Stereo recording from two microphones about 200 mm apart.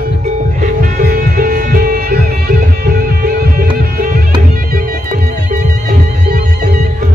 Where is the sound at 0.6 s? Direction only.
40° right (ahead or behind).